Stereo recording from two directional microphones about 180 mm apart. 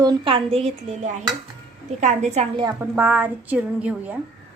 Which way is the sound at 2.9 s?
10° right (ahead or behind).